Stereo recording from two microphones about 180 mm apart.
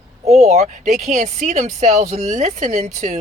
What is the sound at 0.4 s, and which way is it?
Speech, 40° right (ahead or behind).